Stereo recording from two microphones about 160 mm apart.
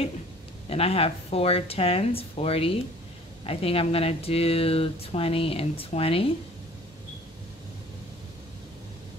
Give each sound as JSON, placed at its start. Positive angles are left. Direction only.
{"t": 0.7, "sound": "speech", "side_deg": 40}